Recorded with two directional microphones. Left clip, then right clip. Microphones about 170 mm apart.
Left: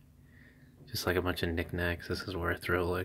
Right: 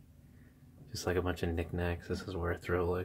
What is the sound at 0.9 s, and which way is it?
Speech, 10° left (ahead or behind).